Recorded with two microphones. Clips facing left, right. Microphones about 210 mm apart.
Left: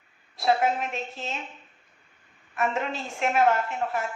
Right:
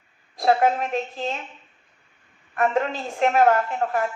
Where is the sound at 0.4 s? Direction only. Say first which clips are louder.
Right 4 dB; 45° right (ahead or behind).